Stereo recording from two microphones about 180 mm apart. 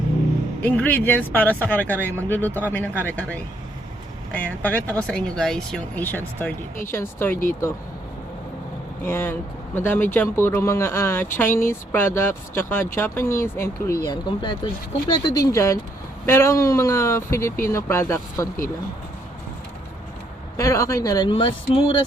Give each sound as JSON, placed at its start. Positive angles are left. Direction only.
{"t": 0.6, "sound": "speech", "side_deg": 10}
{"t": 9.0, "sound": "speech", "side_deg": 10}
{"t": 20.6, "sound": "speech", "side_deg": 15}